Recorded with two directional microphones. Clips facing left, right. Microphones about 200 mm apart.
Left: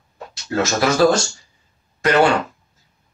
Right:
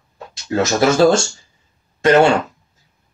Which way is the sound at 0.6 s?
25° right (ahead or behind).